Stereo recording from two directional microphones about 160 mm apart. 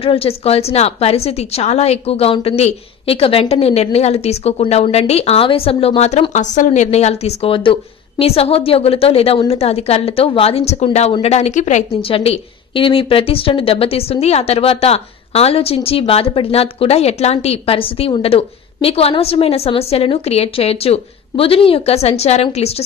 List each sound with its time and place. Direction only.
0.0 s a woman's voice: 35° left (ahead or behind)
12.1 s a woman's voice: 35° left (ahead or behind)